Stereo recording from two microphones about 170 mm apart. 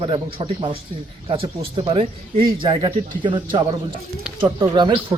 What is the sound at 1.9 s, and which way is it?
Speech, 30° right (ahead or behind).